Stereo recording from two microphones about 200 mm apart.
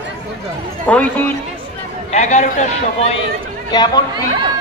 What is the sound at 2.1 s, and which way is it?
A man's voice, 35° left (ahead or behind).